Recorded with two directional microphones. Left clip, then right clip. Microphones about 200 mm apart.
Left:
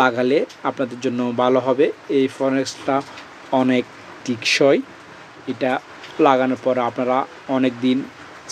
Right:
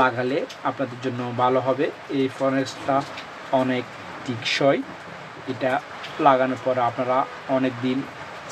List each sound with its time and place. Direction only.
0.0 s speech: 50° left (ahead or behind)
6.2 s speech: 50° left (ahead or behind)